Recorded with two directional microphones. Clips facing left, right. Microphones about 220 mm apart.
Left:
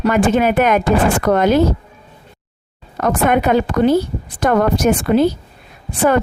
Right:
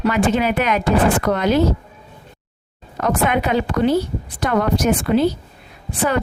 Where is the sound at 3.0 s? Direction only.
45° left (ahead or behind).